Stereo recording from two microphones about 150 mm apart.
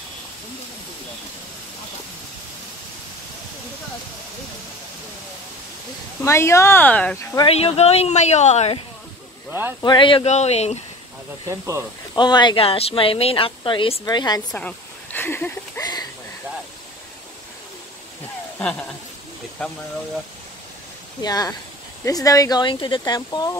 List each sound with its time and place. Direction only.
6.2 s speech: 20° left (ahead or behind)
7.4 s speech: 40° left (ahead or behind)
9.5 s speech: 15° right (ahead or behind)
9.8 s speech: 30° left (ahead or behind)
10.2 s speech: 45° left (ahead or behind)
11.4 s speech: 20° right (ahead or behind)
12.2 s speech: 30° left (ahead or behind)
14.5 s a sound: 10° left (ahead or behind)
15.8 s a sound: 25° left (ahead or behind)
18.6 s speech: 5° left (ahead or behind)
21.2 s speech: 25° left (ahead or behind)